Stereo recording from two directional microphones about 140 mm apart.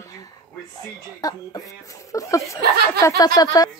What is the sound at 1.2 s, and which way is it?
Speech, 25° left (ahead or behind).